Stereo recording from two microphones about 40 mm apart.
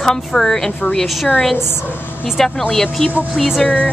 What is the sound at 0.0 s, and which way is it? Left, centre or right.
Speech, centre.